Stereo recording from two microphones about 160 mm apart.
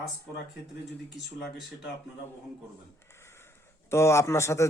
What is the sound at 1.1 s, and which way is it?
Speech, centre (ahead or behind).